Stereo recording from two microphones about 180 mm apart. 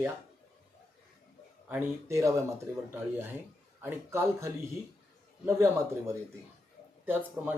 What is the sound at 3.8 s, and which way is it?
Speech, 15° right (ahead or behind).